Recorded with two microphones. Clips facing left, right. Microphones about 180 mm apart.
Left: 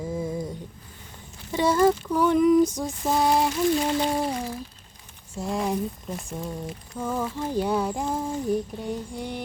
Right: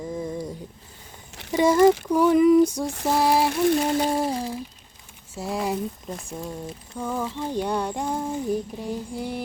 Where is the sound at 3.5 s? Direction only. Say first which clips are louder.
Right 2 dB; 55° right (ahead or behind).